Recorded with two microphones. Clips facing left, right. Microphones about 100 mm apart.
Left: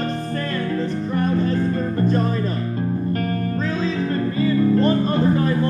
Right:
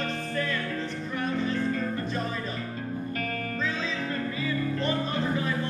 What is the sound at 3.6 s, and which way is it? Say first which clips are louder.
Music: left 7 dB; 45° left (ahead or behind).